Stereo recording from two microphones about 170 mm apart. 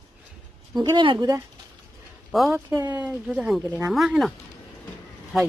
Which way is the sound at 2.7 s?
20° right (ahead or behind).